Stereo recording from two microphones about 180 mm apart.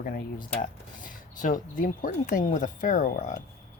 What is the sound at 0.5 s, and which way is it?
Speech, 50° left (ahead or behind).